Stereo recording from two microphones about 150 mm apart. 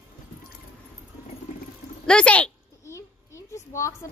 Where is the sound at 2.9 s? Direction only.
20° left (ahead or behind).